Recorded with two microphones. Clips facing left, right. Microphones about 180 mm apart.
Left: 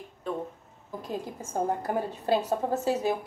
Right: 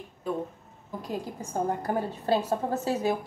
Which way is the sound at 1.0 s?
25° left (ahead or behind).